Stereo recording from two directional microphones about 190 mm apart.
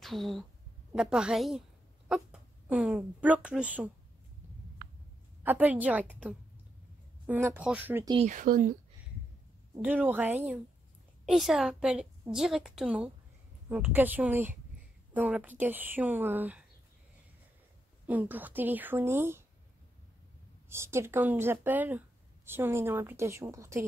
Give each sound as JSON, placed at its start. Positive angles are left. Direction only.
{"t": 0.0, "sound": "a woman's voice", "side_deg": 0}
{"t": 5.4, "sound": "speech", "side_deg": -10}
{"t": 8.3, "sound": "speech", "side_deg": -45}
{"t": 9.8, "sound": "a woman's voice", "side_deg": -10}
{"t": 18.0, "sound": "speech", "side_deg": -10}
{"t": 20.7, "sound": "speech", "side_deg": -15}